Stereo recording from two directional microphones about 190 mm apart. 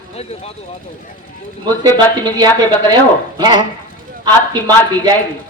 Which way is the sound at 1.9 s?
25° right (ahead or behind).